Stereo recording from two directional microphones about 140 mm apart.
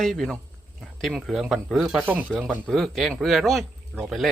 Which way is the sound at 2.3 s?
Centre (ahead or behind).